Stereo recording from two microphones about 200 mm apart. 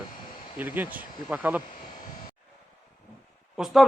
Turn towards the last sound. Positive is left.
turn(degrees=0)  # may be behind; listen again after turning